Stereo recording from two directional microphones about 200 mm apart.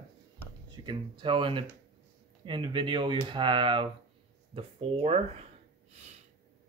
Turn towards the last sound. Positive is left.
turn(degrees=-30)  # may be behind; listen again after turning